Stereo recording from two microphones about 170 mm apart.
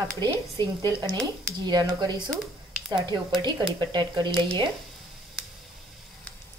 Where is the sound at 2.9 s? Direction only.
25° right (ahead or behind).